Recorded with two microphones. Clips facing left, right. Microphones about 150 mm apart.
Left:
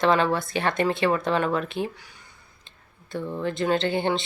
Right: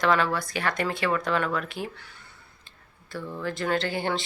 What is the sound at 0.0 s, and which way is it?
A woman's voice, 25° left (ahead or behind).